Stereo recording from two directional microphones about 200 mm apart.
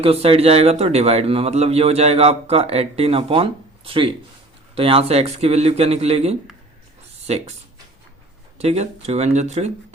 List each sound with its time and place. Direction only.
0.0 s speech: 30° right (ahead or behind)
8.5 s speech: 30° right (ahead or behind)